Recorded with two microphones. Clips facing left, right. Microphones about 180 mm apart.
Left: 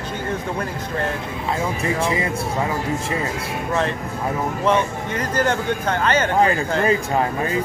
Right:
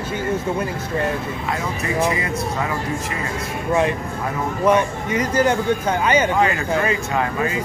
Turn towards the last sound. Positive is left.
turn(degrees=35)  # may be behind; listen again after turning